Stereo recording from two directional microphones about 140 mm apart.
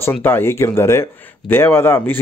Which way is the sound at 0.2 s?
15° left (ahead or behind).